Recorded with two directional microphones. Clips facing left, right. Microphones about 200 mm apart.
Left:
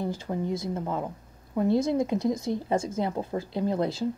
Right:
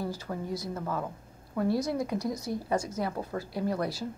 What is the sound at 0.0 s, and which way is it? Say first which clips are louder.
A woman's voice: left 4 dB; 20° left (ahead or behind).